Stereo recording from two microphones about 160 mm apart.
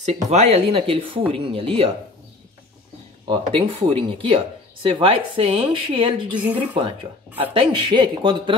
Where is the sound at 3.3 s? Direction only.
35° right (ahead or behind).